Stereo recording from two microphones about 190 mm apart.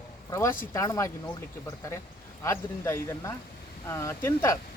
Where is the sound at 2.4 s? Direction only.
15° left (ahead or behind).